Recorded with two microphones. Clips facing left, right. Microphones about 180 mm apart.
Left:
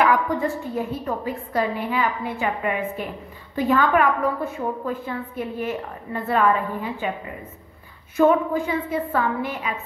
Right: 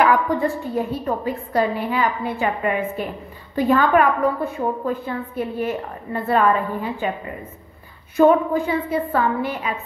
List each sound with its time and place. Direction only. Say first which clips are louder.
0.0 s a woman's voice: right 2 dB; 35° right (ahead or behind)